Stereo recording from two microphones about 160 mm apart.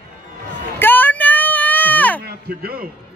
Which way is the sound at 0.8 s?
10° left (ahead or behind).